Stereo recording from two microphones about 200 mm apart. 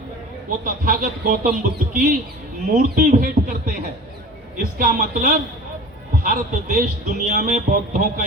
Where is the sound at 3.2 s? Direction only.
45° right (ahead or behind).